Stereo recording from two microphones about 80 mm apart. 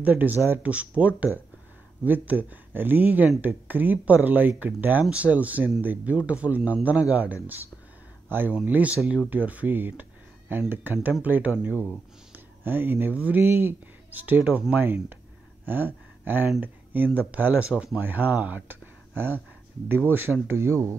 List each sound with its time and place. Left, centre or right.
0.0 s speech: right
14.4 s speech: centre
15.6 s a sound: right
16.6 s speech: right